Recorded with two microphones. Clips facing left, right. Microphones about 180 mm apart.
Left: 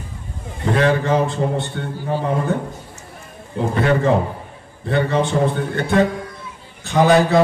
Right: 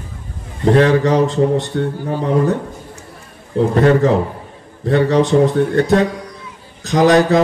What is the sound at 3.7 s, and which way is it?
Speech, 40° right (ahead or behind).